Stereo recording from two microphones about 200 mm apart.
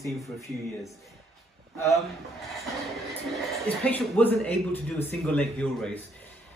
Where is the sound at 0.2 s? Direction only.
15° left (ahead or behind).